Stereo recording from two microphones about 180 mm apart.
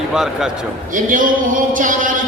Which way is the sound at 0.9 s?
50° right (ahead or behind).